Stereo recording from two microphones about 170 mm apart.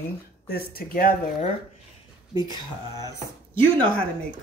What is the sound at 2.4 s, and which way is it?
Speech, 25° left (ahead or behind).